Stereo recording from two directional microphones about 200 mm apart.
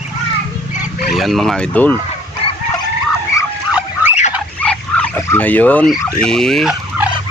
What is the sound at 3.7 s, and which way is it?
Fowl, 5° right (ahead or behind).